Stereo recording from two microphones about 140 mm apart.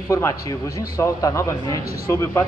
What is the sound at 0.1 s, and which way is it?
A man's voice, 20° left (ahead or behind).